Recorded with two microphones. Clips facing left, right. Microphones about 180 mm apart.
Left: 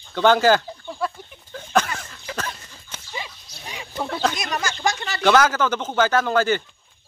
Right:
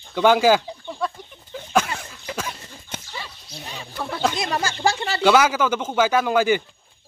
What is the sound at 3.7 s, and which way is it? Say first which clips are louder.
Speech: left 2 dB; 10° left (ahead or behind).